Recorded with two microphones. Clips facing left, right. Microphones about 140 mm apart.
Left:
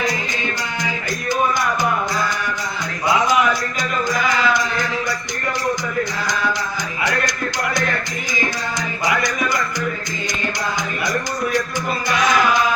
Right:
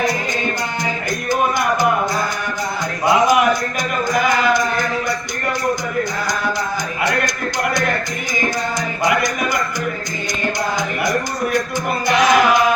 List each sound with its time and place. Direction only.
3.2 s music: 55° right (ahead or behind)
9.0 s music: 55° right (ahead or behind)
11.0 s music: 55° right (ahead or behind)